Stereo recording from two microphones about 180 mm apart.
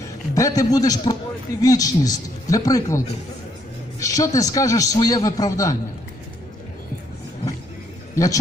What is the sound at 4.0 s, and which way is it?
A man's voice, 20° left (ahead or behind).